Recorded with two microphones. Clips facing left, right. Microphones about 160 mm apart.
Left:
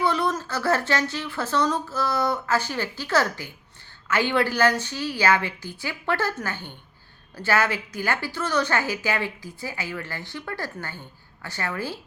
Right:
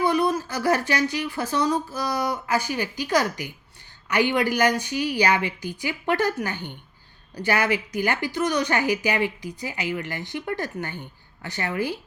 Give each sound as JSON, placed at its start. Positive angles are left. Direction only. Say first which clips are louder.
{"t": 0.0, "sound": "a woman's voice", "louder": "right 2 dB", "side_deg": -10}